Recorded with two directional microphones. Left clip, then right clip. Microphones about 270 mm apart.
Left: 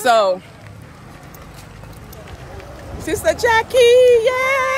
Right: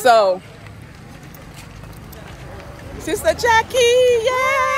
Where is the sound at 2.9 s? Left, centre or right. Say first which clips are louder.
Even; centre.